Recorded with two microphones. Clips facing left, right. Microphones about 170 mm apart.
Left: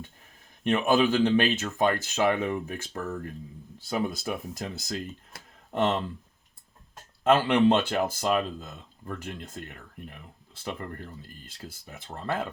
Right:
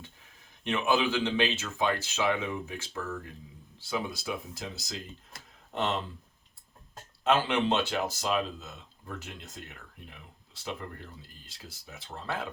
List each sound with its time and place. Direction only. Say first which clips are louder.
0.6 s speech: left 5 dB; 55° left (ahead or behind)
7.3 s speech: left 5 dB; 55° left (ahead or behind)
11.2 s speech: left 7 dB; 50° left (ahead or behind)